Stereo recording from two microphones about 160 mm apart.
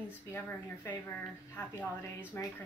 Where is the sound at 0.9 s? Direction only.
15° left (ahead or behind).